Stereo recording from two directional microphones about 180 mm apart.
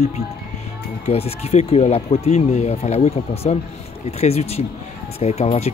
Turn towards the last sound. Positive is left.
turn(degrees=35)  # may be behind; listen again after turning